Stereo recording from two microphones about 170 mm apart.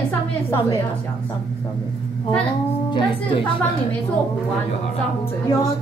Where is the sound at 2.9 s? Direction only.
30° left (ahead or behind).